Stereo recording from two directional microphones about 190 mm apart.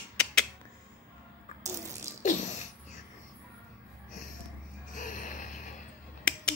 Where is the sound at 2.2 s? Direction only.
40° left (ahead or behind).